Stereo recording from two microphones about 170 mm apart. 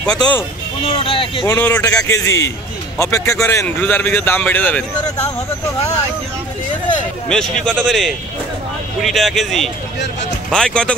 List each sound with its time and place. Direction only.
0.0 s speech: 5° left (ahead or behind)
0.8 s speech: 35° left (ahead or behind)
1.4 s speech: 10° left (ahead or behind)
1.8 s speech: 20° left (ahead or behind)
7.2 s speech: 5° left (ahead or behind)